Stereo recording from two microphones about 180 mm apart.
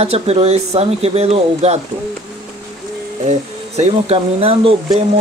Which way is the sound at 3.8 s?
35° right (ahead or behind).